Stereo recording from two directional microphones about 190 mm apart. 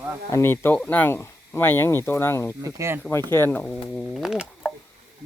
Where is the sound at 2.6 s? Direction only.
15° right (ahead or behind).